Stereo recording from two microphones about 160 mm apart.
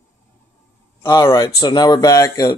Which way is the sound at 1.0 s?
25° left (ahead or behind).